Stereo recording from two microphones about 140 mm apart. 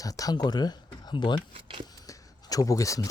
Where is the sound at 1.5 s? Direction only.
40° right (ahead or behind).